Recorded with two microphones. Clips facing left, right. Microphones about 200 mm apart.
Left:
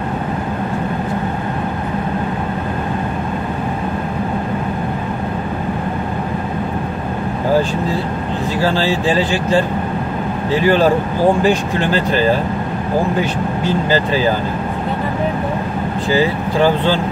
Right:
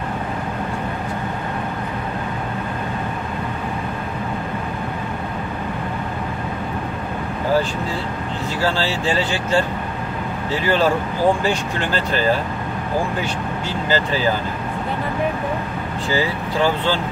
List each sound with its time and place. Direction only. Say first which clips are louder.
8.5 s speech: left 4 dB; 15° left (ahead or behind)
13.8 s speech: left 1 dB; 15° left (ahead or behind)
16.1 s speech: left 5 dB; 15° left (ahead or behind)